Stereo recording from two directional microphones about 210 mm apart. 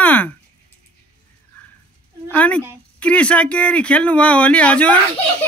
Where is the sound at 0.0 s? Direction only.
5° left (ahead or behind).